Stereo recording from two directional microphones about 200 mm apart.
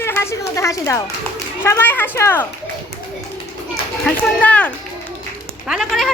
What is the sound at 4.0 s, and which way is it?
A woman's voice, 5° left (ahead or behind).